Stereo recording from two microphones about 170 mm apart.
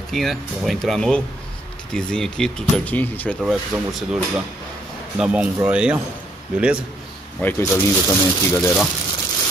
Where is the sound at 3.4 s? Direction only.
5° right (ahead or behind).